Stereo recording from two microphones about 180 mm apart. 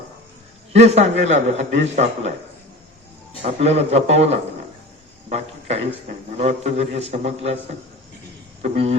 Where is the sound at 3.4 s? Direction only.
35° right (ahead or behind).